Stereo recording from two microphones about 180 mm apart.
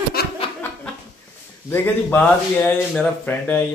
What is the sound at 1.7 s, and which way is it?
A man's voice, 10° left (ahead or behind).